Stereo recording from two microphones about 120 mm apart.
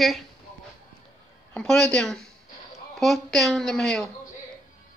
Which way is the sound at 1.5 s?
5° left (ahead or behind).